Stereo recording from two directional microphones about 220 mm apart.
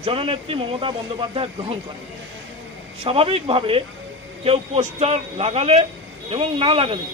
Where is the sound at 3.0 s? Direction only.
25° right (ahead or behind).